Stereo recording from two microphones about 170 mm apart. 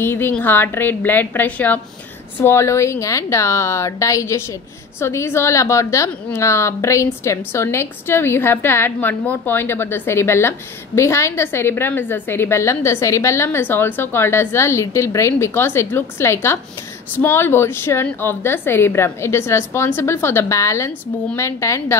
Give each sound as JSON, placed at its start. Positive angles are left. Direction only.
{"t": 0.0, "sound": "a woman's voice", "side_deg": 10}